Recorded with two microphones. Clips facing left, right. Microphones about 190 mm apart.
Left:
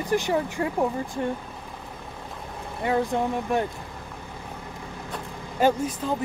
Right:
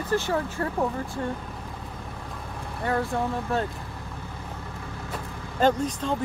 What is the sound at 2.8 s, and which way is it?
Speech, 15° left (ahead or behind).